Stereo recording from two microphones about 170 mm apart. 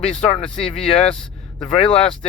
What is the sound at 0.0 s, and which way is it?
Speech, 35° left (ahead or behind).